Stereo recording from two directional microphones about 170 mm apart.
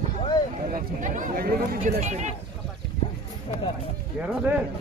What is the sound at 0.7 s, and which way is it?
Speech, 50° right (ahead or behind).